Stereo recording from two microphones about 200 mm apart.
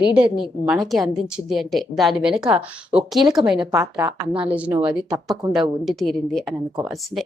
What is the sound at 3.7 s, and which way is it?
A woman's voice, 15° right (ahead or behind).